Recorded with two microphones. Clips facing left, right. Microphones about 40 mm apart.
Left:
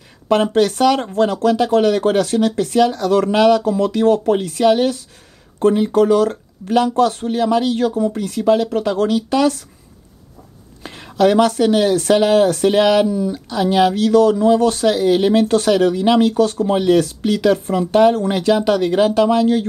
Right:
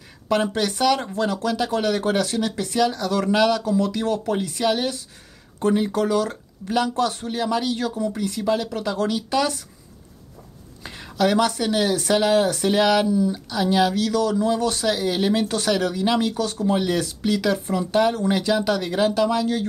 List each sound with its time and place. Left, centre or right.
0.3 s speech: left
5.9 s speech: left
10.8 s a sound: left
11.1 s speech: left